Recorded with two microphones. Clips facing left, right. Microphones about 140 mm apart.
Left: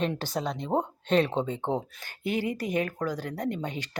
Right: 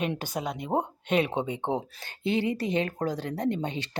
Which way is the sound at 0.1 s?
10° right (ahead or behind).